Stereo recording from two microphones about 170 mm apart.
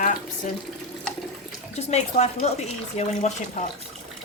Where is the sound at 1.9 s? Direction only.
40° left (ahead or behind).